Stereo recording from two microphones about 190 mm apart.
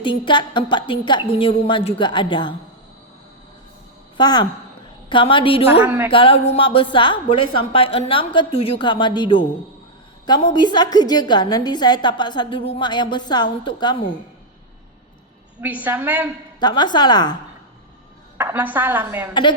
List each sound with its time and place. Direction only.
0.0 s a woman's voice: 25° left (ahead or behind)
4.2 s a woman's voice: 20° left (ahead or behind)
5.8 s a woman's voice: 10° right (ahead or behind)
6.1 s a woman's voice: 30° left (ahead or behind)
15.6 s a woman's voice: 10° right (ahead or behind)
16.6 s a woman's voice: 20° left (ahead or behind)
18.3 s a woman's voice: 10° right (ahead or behind)
19.3 s a woman's voice: 25° left (ahead or behind)